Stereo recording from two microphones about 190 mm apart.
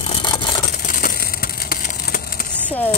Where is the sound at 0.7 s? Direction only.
50° left (ahead or behind).